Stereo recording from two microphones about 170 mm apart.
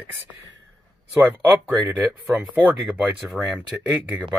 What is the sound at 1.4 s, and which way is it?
Speech, 10° right (ahead or behind).